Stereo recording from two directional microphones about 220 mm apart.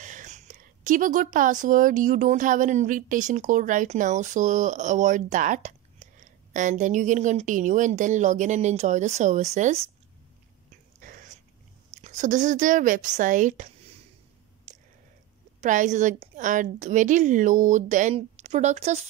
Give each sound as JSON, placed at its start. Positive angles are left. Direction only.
{"t": 0.0, "sound": "speech", "side_deg": -35}
{"t": 11.0, "sound": "dog", "side_deg": -35}
{"t": 11.9, "sound": "speech", "side_deg": -35}
{"t": 14.7, "sound": "a sound", "side_deg": -35}
{"t": 15.6, "sound": "speech", "side_deg": -35}